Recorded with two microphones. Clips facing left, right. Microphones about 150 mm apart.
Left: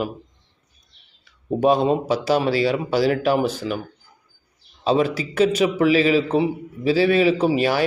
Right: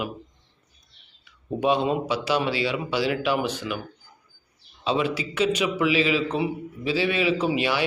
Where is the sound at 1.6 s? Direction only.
40° left (ahead or behind).